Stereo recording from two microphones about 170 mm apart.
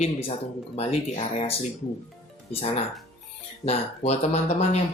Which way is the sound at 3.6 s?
40° left (ahead or behind).